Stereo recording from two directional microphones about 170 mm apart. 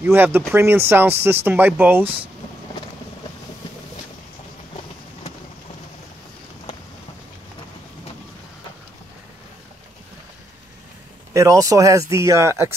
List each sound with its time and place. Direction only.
0.0 s speech: 10° right (ahead or behind)
11.3 s speech: 20° right (ahead or behind)